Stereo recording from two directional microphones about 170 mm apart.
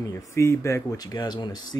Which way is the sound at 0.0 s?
15° left (ahead or behind).